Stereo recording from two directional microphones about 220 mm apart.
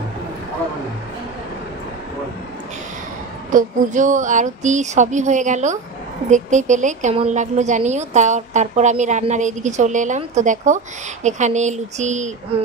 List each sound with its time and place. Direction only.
3.5 s a woman's voice: 35° right (ahead or behind)